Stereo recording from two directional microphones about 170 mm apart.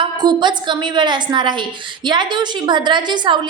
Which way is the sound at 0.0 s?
25° right (ahead or behind).